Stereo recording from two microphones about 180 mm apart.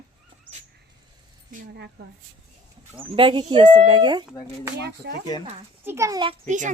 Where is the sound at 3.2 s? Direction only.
25° right (ahead or behind).